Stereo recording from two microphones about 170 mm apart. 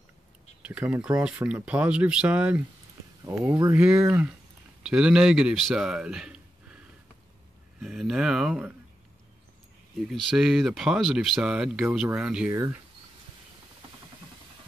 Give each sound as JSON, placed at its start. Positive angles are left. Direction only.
{"t": 0.6, "sound": "speech", "side_deg": -10}
{"t": 3.3, "sound": "speech", "side_deg": -15}
{"t": 3.7, "sound": "speech", "side_deg": -10}
{"t": 7.8, "sound": "speech", "side_deg": 0}
{"t": 10.0, "sound": "speech", "side_deg": 0}